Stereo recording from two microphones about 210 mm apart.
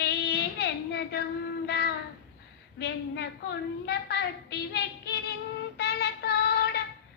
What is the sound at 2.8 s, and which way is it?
A woman's voice, 50° left (ahead or behind).